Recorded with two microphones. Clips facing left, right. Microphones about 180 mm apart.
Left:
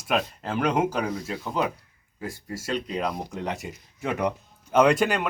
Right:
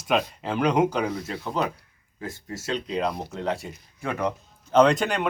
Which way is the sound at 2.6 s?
10° left (ahead or behind).